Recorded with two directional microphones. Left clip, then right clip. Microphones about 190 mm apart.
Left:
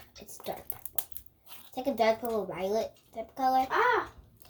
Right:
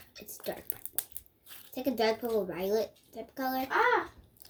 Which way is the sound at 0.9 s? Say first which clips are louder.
Left 1 dB; 5° right (ahead or behind).